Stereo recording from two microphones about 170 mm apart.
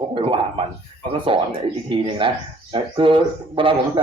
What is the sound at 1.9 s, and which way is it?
Speech, 30° right (ahead or behind).